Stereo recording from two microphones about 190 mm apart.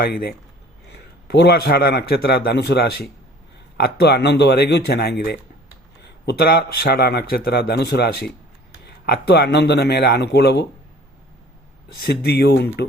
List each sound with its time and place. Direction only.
0.0 s a man's voice: 55° left (ahead or behind)
12.2 s a man's voice: 60° left (ahead or behind)